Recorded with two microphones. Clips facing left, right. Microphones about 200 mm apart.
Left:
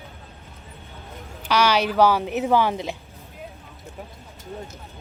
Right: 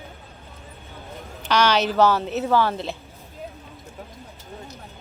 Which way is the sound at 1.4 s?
10° left (ahead or behind).